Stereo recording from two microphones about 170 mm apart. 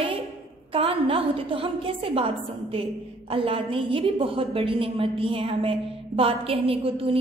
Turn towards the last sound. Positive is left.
turn(degrees=-35)  # may be behind; listen again after turning